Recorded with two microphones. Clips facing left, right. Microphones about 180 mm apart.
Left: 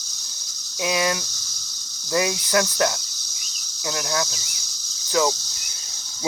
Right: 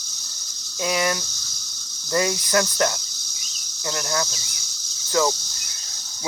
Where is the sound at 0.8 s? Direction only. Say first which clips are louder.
Even; 15° left (ahead or behind).